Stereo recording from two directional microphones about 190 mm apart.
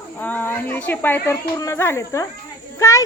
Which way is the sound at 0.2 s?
10° left (ahead or behind).